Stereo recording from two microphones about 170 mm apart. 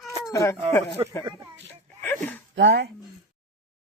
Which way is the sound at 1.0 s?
30° right (ahead or behind).